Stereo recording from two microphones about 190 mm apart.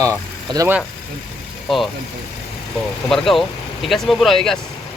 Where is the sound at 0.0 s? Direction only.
15° right (ahead or behind).